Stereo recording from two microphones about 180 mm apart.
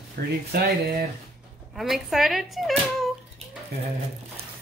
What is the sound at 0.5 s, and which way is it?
Speech, 60° right (ahead or behind).